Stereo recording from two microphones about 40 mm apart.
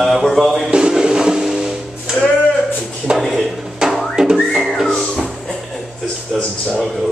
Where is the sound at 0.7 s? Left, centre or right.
Right.